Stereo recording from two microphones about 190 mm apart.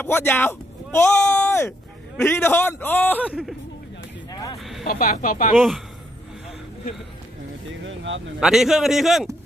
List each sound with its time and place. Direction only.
0.0 s a man's voice: 10° left (ahead or behind)
4.3 s vehicle: 20° left (ahead or behind)
4.8 s speech: 45° left (ahead or behind)
7.8 s speech: 75° right (ahead or behind)
8.4 s a man's voice: centre (ahead or behind)